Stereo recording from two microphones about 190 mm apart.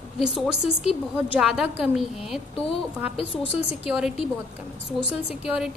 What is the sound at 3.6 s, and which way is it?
Speech, 5° right (ahead or behind).